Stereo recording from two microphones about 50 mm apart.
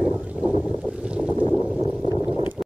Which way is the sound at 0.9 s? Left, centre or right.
Right.